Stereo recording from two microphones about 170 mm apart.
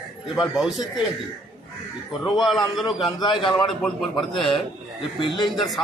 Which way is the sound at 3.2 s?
30° left (ahead or behind).